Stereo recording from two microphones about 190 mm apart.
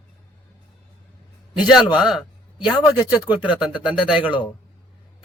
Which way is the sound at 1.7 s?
5° right (ahead or behind).